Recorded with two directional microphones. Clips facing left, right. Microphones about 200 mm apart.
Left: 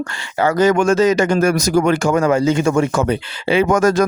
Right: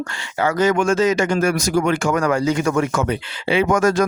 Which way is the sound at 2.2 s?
25° left (ahead or behind).